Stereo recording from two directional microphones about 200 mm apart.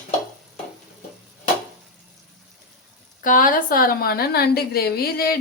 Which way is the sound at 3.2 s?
45° left (ahead or behind).